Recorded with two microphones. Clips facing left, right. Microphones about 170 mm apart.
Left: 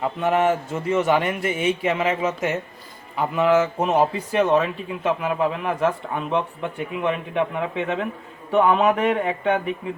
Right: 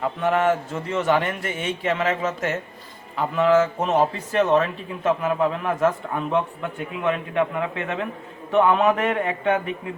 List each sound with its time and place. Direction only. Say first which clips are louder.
0.0 s a man's voice: left 1 dB; 20° left (ahead or behind); by 9.9 s centre (ahead or behind)